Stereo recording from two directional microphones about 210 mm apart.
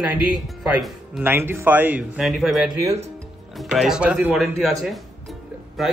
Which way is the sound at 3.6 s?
Centre (ahead or behind).